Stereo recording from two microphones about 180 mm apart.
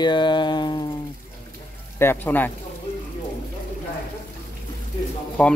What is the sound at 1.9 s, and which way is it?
Speech, 10° left (ahead or behind).